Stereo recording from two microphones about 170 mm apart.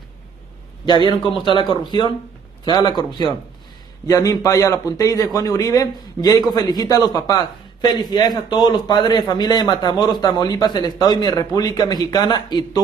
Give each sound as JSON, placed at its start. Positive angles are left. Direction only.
{"t": 0.8, "sound": "a man's voice", "side_deg": 25}